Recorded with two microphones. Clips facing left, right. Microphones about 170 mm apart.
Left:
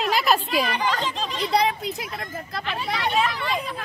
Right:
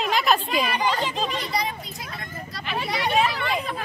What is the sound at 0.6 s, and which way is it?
Speech, 10° right (ahead or behind).